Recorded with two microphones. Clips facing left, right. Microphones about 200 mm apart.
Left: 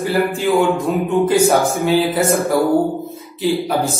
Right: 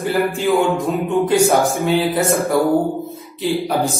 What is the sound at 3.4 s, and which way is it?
Speech, centre (ahead or behind).